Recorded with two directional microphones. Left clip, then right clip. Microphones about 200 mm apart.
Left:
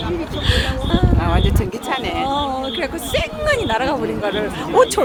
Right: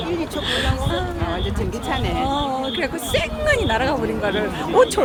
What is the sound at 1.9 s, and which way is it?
Speech, 30° left (ahead or behind).